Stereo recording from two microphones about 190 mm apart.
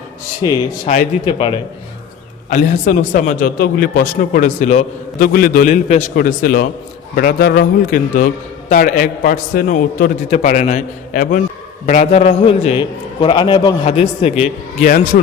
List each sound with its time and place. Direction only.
0.4 s a man's voice: 25° left (ahead or behind)
0.9 s a man's voice: 35° left (ahead or behind)
2.5 s a man's voice: 40° left (ahead or behind); by 13.7 s 25° left (ahead or behind)
13.8 s a man's voice: 35° left (ahead or behind)